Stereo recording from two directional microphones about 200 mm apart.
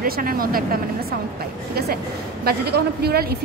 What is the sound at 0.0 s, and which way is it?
Speech, 45° right (ahead or behind).